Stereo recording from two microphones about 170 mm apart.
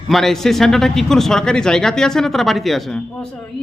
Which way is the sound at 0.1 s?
Centre (ahead or behind).